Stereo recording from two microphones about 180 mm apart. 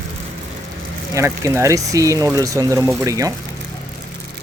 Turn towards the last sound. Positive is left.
turn(degrees=-20)  # may be behind; listen again after turning